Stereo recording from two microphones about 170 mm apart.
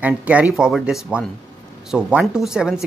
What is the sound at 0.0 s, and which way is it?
A woman's voice, 10° right (ahead or behind).